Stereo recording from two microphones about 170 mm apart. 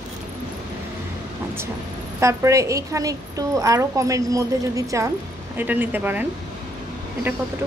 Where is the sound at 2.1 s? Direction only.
15° right (ahead or behind).